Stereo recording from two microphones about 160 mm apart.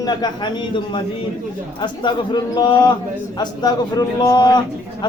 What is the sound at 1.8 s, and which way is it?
A man's voice, 30° left (ahead or behind).